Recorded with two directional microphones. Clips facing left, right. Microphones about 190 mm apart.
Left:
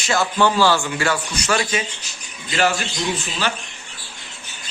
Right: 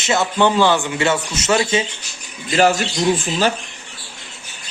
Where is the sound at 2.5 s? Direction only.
40° right (ahead or behind).